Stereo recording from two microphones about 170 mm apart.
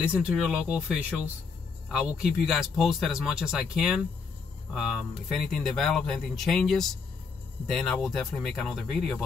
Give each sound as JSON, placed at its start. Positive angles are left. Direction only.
{"t": 0.0, "sound": "speech", "side_deg": -5}